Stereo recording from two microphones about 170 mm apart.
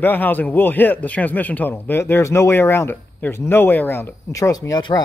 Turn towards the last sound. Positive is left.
turn(degrees=25)  # may be behind; listen again after turning